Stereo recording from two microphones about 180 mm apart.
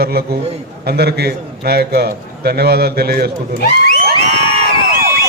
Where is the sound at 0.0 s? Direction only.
60° right (ahead or behind).